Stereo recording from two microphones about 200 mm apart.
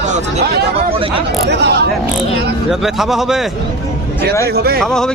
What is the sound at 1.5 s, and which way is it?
Speech, 55° right (ahead or behind).